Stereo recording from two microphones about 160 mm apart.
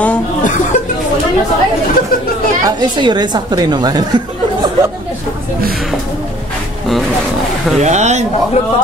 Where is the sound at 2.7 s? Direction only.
30° right (ahead or behind).